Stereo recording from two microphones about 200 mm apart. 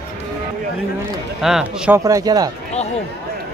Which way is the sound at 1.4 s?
5° right (ahead or behind).